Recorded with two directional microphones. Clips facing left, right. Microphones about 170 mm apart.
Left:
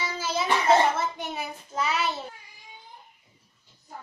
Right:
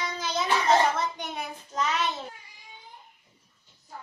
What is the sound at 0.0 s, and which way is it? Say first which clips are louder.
Child singing: left 1 dB; 5° left (ahead or behind).